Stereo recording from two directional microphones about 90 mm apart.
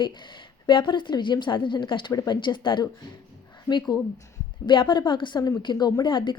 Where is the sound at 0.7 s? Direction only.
65° left (ahead or behind).